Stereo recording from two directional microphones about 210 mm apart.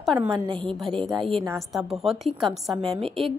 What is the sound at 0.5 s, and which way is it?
Speech, 25° right (ahead or behind).